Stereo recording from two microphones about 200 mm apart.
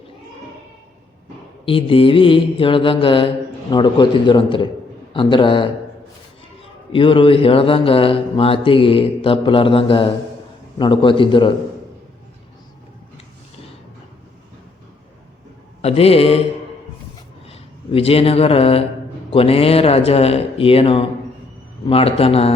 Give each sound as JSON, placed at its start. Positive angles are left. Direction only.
{"t": 1.6, "sound": "speech", "side_deg": 25}
{"t": 6.9, "sound": "speech", "side_deg": 25}
{"t": 15.8, "sound": "speech", "side_deg": 30}
{"t": 17.4, "sound": "speech", "side_deg": 30}